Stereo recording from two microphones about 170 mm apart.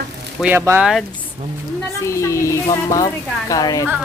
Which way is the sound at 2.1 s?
15° left (ahead or behind).